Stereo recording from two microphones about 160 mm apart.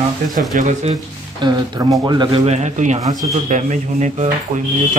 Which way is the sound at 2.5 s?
45° right (ahead or behind).